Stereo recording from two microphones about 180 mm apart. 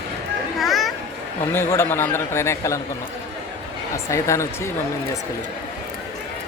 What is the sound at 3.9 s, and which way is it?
Speech, 15° left (ahead or behind).